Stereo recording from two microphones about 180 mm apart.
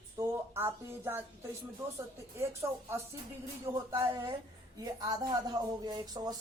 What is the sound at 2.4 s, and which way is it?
Speech, 15° right (ahead or behind).